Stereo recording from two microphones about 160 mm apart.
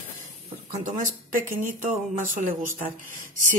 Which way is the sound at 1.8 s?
55° right (ahead or behind).